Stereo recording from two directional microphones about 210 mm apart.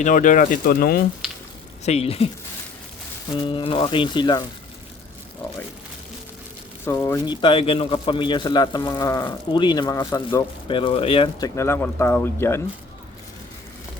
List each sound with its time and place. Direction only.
0.0 s speech: 40° left (ahead or behind)
1.8 s a man's voice: 30° left (ahead or behind)
3.4 s a man's voice: 25° left (ahead or behind)
6.8 s a man's voice: 15° left (ahead or behind)